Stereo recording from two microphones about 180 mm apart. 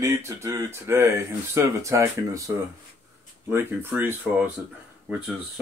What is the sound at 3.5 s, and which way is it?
Speech, 15° right (ahead or behind).